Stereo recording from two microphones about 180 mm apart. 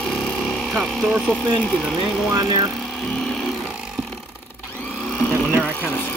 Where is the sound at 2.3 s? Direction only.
20° right (ahead or behind).